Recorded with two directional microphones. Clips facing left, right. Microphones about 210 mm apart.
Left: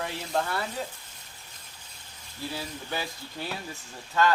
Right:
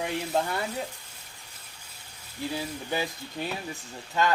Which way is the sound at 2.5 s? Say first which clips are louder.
Right 3 dB; 15° right (ahead or behind).